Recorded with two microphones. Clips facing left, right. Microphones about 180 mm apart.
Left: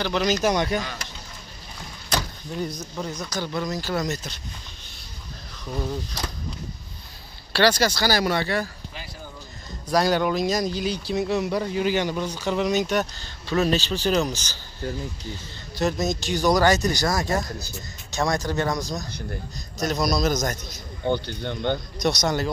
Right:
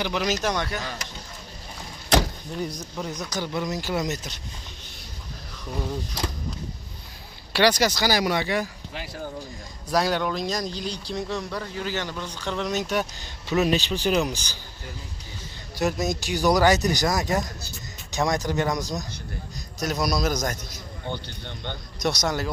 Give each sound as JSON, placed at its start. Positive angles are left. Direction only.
{"t": 0.0, "sound": "speech", "side_deg": -5}
{"t": 0.4, "sound": "speech", "side_deg": 15}
{"t": 2.6, "sound": "speech", "side_deg": -15}
{"t": 3.0, "sound": "speech", "side_deg": 0}
{"t": 3.3, "sound": "speech", "side_deg": -20}
{"t": 7.5, "sound": "speech", "side_deg": -15}
{"t": 9.8, "sound": "speech", "side_deg": 0}
{"t": 13.2, "sound": "speech", "side_deg": -15}
{"t": 15.8, "sound": "speech", "side_deg": -15}
{"t": 21.1, "sound": "speech", "side_deg": 45}
{"t": 21.9, "sound": "speech", "side_deg": -10}